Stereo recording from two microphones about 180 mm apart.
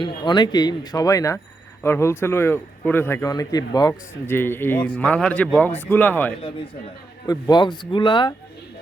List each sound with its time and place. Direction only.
0.0 s a man's voice: 25° left (ahead or behind)
7.3 s speech: 20° left (ahead or behind)